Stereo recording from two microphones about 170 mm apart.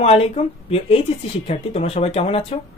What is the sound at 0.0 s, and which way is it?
Speech, 35° left (ahead or behind).